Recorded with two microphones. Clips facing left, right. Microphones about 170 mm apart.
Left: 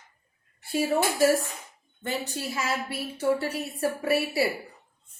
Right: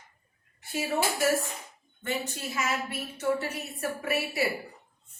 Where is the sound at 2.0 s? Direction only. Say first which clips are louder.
Left 2 dB; 35° left (ahead or behind).